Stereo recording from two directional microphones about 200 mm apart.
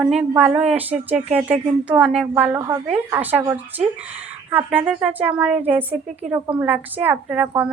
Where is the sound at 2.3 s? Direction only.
15° right (ahead or behind).